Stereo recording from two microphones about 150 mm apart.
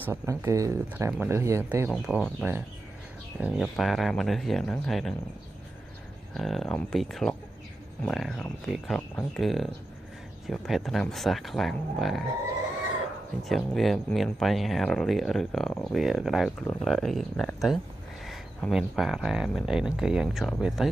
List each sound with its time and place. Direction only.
0.0 s speech: 15° right (ahead or behind)
1.9 s speech: centre (ahead or behind)
3.3 s speech: 5° right (ahead or behind)
6.3 s speech: centre (ahead or behind)
13.4 s speech: centre (ahead or behind)